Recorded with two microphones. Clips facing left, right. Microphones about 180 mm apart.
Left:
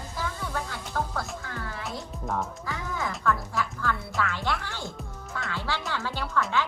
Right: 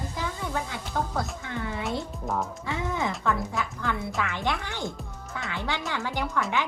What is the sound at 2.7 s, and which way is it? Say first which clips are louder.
Speech: right 4 dB; 20° right (ahead or behind).